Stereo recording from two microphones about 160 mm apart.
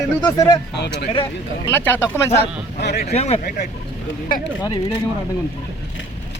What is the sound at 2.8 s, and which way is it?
Speech, 70° left (ahead or behind).